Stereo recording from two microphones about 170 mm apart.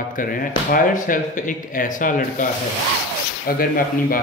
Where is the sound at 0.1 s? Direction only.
55° left (ahead or behind).